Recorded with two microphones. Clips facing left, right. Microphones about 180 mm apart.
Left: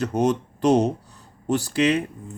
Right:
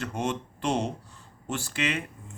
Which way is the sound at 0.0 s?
40° left (ahead or behind).